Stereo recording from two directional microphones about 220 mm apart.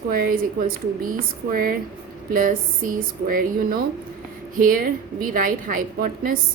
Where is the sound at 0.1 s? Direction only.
40° right (ahead or behind).